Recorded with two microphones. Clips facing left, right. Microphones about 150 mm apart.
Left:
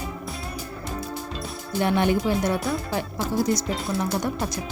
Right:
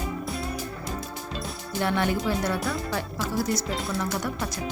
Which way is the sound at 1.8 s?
20° left (ahead or behind).